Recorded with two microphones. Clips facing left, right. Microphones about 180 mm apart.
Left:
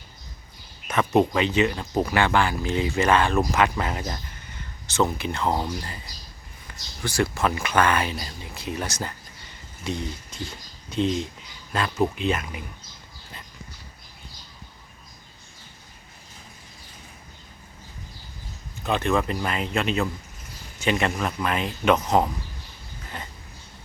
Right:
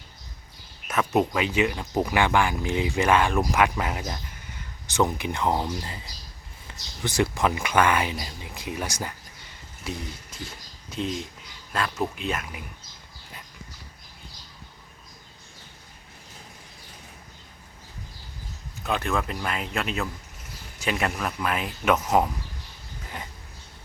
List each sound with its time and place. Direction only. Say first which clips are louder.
0.9 s speech: left 3 dB; 5° right (ahead or behind)
6.7 s speech: even; 20° right (ahead or behind); by 12.6 s 5° right (ahead or behind)
18.8 s speech: left 4 dB; centre (ahead or behind)